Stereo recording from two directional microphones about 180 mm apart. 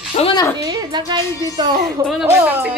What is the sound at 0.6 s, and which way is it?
A woman's voice, 20° right (ahead or behind).